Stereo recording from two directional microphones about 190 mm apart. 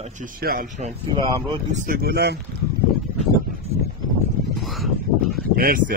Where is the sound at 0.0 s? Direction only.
45° right (ahead or behind).